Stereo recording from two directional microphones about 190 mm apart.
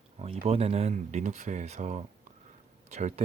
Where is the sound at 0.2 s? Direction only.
30° right (ahead or behind).